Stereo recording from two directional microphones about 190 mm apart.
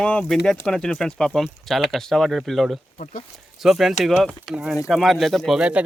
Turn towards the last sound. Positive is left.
turn(degrees=-5)  # may be behind; listen again after turning